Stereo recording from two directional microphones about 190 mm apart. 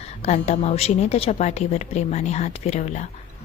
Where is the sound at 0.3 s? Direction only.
35° left (ahead or behind).